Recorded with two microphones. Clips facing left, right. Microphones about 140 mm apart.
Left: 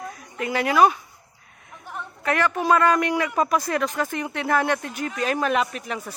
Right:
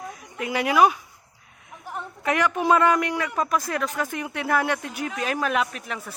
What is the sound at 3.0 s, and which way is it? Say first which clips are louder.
Speech: left 3 dB; 5° left (ahead or behind).